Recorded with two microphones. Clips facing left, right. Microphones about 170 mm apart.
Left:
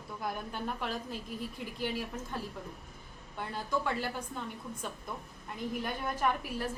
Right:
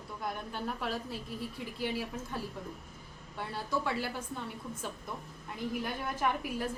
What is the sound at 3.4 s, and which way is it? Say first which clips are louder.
Speech: left 1 dB; centre (ahead or behind).